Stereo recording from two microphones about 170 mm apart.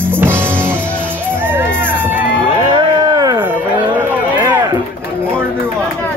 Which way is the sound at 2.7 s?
25° right (ahead or behind).